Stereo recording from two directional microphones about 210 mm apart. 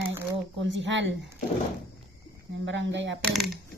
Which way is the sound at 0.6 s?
60° right (ahead or behind).